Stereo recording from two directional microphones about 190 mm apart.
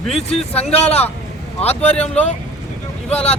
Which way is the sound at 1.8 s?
5° left (ahead or behind).